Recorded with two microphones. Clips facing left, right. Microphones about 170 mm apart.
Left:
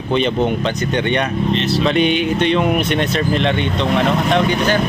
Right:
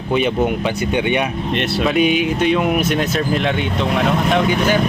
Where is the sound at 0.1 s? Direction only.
10° right (ahead or behind).